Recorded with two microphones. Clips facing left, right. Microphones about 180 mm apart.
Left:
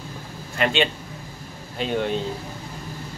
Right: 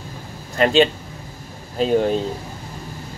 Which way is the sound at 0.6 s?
35° right (ahead or behind).